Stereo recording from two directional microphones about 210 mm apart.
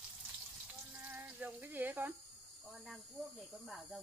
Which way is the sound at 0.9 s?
10° right (ahead or behind).